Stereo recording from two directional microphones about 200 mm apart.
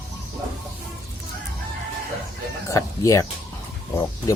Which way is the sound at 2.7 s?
15° left (ahead or behind).